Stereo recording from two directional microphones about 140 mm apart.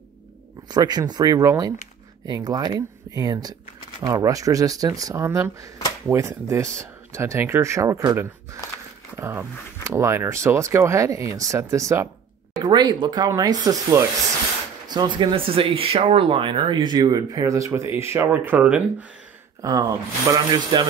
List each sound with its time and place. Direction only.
0.7 s speech: 30° right (ahead or behind)
9.2 s speech: 15° right (ahead or behind)
19.6 s speech: 25° right (ahead or behind)